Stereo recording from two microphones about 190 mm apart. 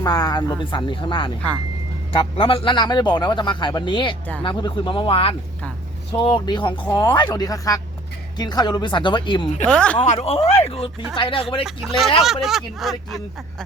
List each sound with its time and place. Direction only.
0.0 s a man's voice: 20° left (ahead or behind)
9.6 s speech: 5° left (ahead or behind)
10.0 s a man's voice: 35° left (ahead or behind)
11.6 s speech: centre (ahead or behind)